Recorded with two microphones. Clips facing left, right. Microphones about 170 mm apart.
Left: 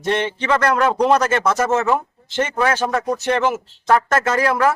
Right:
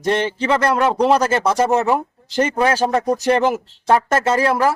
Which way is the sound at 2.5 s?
15° right (ahead or behind).